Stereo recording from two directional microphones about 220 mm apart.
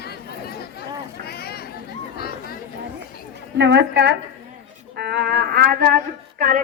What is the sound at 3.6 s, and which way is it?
Speech, 50° right (ahead or behind).